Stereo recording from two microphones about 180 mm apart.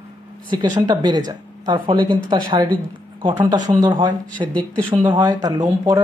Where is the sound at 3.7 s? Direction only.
20° right (ahead or behind).